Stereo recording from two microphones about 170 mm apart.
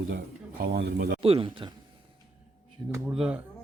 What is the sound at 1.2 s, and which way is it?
Speech, 35° right (ahead or behind).